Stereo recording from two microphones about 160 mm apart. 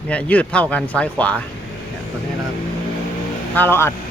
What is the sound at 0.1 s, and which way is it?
Speech, 10° left (ahead or behind).